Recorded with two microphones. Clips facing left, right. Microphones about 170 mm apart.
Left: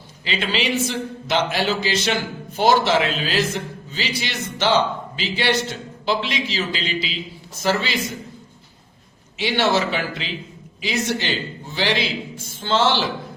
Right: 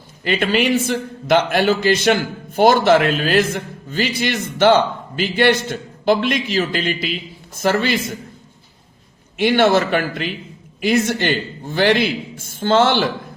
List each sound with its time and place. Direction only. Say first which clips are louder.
0.3 s a man's voice: right 6 dB; 50° right (ahead or behind)
9.4 s a man's voice: right 6 dB; 50° right (ahead or behind)